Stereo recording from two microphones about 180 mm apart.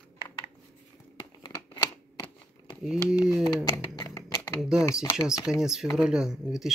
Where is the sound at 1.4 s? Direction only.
25° left (ahead or behind).